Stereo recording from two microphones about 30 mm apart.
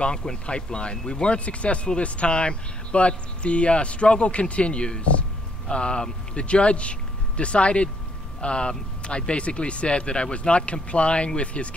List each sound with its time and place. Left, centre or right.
0.0 s speech: left
1.4 s speech: left